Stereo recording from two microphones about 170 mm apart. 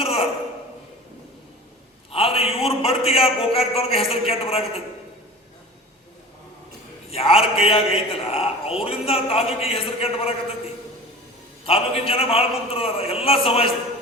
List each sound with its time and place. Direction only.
0.0 s a sound: 35° left (ahead or behind)
2.1 s a man's voice: 35° left (ahead or behind)
7.1 s a man's voice: 35° left (ahead or behind)
11.6 s a man's voice: 35° left (ahead or behind)